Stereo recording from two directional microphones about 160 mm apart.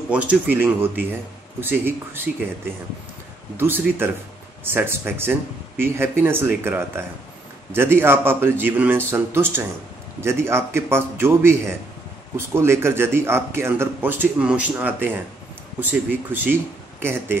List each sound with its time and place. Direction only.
0.1 s speech: 10° right (ahead or behind)
3.5 s speech: 15° right (ahead or behind)